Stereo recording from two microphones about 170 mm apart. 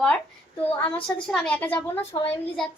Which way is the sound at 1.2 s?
5° left (ahead or behind).